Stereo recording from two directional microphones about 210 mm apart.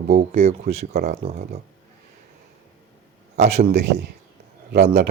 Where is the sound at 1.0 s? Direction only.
45° right (ahead or behind).